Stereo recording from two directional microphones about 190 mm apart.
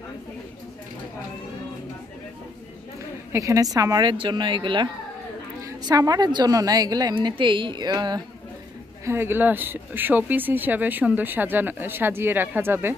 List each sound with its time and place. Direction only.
3.3 s a woman's voice: 15° right (ahead or behind)